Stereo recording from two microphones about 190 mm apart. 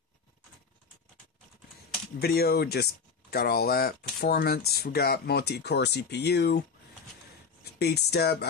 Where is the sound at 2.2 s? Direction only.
55° left (ahead or behind).